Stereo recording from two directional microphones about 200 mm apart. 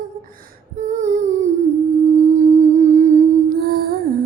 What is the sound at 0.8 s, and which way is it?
Humming, 35° right (ahead or behind).